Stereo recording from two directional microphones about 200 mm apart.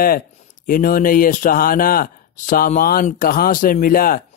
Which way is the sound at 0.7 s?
45° left (ahead or behind).